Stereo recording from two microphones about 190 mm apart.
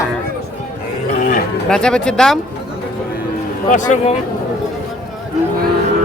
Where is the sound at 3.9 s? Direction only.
40° left (ahead or behind).